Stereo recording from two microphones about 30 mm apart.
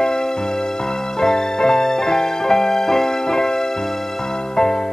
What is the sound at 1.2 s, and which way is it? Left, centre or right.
Music, centre.